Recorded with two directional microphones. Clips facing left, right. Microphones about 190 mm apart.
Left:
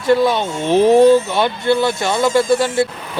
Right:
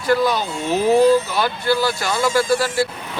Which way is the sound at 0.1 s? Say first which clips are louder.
Left 4 dB; 25° left (ahead or behind).